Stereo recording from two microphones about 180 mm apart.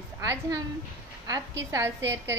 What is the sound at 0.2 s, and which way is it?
Speech, 20° right (ahead or behind).